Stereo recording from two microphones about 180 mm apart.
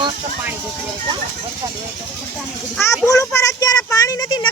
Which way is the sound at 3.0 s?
15° left (ahead or behind).